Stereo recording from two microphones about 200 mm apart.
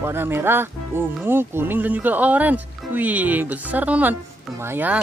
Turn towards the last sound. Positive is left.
turn(degrees=-10)  # may be behind; listen again after turning